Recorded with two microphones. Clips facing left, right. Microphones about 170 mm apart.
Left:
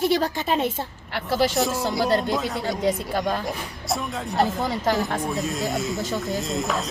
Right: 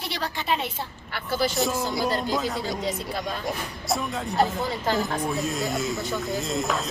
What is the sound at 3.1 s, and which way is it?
Speech, 50° left (ahead or behind).